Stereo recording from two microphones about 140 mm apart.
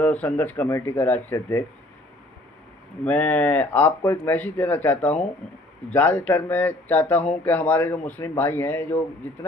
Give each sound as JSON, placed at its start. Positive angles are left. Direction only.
{"t": 0.0, "sound": "speech", "side_deg": 10}
{"t": 3.1, "sound": "speech", "side_deg": 10}